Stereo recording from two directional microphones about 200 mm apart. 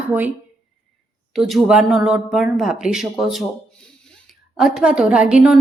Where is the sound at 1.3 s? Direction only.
Centre (ahead or behind).